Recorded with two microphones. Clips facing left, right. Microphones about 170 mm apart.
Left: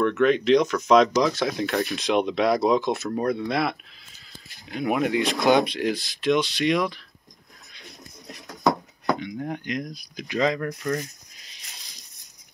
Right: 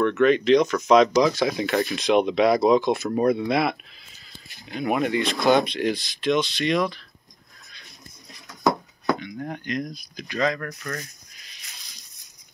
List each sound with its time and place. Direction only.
0.0 s speech: centre (ahead or behind)
3.1 s speech: 10° right (ahead or behind)
5.2 s speech: 15° left (ahead or behind)
9.4 s speech: 10° left (ahead or behind)